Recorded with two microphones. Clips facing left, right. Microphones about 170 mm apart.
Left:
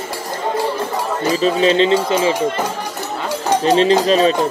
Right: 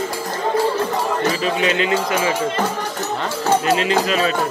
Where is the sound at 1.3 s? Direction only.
30° left (ahead or behind).